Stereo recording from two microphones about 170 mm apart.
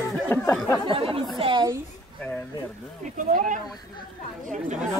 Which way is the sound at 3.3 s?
55° right (ahead or behind).